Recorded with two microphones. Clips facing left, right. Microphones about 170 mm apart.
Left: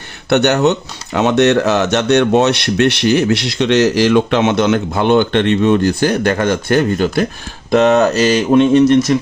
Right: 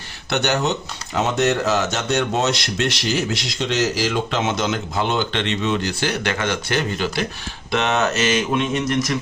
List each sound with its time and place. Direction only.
0.3 s speech: 60° left (ahead or behind); by 7.3 s 45° left (ahead or behind)
7.7 s mantra: 40° left (ahead or behind)